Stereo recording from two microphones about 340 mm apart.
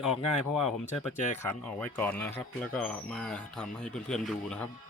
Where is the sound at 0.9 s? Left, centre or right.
Left.